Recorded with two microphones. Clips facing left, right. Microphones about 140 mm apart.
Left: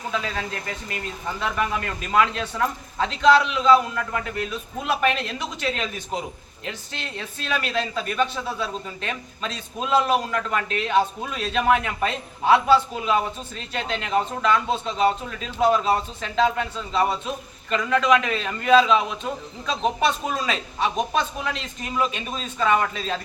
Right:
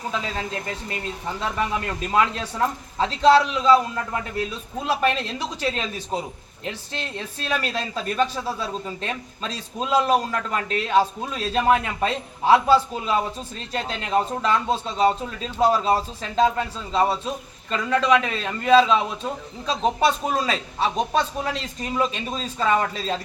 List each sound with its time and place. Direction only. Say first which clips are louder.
0.1 s a man's voice: left 1 dB; 25° right (ahead or behind)